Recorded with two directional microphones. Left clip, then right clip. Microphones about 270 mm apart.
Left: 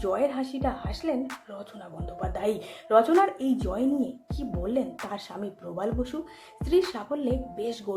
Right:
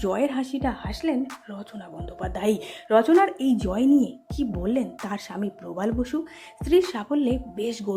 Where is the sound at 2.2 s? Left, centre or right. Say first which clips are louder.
Right 3 dB; right.